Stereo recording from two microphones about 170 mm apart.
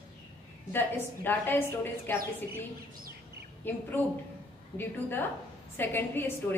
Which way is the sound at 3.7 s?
10° left (ahead or behind).